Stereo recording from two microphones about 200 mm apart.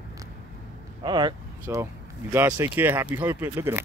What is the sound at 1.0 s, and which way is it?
Speech, 20° right (ahead or behind).